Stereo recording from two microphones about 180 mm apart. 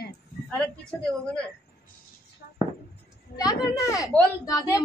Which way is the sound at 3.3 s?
20° left (ahead or behind).